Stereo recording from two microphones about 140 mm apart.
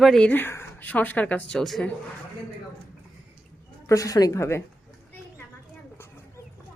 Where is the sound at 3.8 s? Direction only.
25° left (ahead or behind).